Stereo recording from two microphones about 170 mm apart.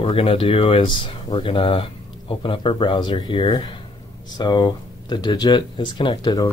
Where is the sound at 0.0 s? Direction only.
30° left (ahead or behind).